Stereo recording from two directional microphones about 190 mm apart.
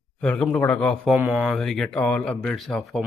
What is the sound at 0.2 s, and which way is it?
Speech, 5° left (ahead or behind).